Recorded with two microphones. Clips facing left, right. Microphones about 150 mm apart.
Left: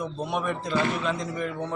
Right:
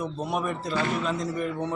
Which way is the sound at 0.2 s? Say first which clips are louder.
Left 1 dB; 5° right (ahead or behind).